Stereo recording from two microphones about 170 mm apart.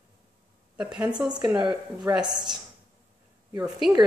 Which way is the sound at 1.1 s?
25° right (ahead or behind).